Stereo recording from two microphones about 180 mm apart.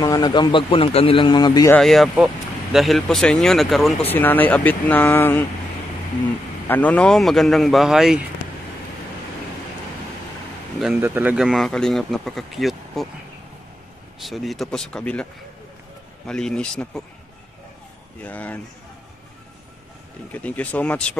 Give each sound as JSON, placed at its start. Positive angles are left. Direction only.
{"t": 0.0, "sound": "a man's voice", "side_deg": 20}
{"t": 1.7, "sound": "speech", "side_deg": 0}
{"t": 4.0, "sound": "speech", "side_deg": 10}
{"t": 6.7, "sound": "speech", "side_deg": 10}
{"t": 11.0, "sound": "speech", "side_deg": -10}
{"t": 14.2, "sound": "speech", "side_deg": 0}
{"t": 16.3, "sound": "speech", "side_deg": 5}
{"t": 18.2, "sound": "speech", "side_deg": 10}
{"t": 20.3, "sound": "speech", "side_deg": 10}